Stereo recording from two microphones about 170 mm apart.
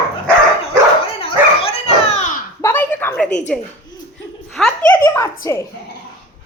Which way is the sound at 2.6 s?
10° left (ahead or behind).